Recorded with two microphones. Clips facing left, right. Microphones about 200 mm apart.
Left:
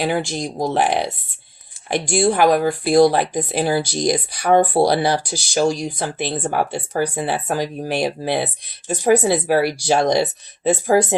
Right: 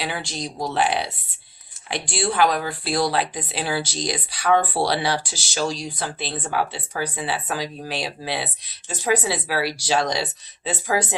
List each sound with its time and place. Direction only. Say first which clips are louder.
0.0 s speech: left 8 dB; 50° left (ahead or behind)